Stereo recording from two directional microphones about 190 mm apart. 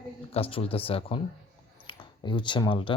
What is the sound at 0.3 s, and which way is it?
Speech, 30° left (ahead or behind).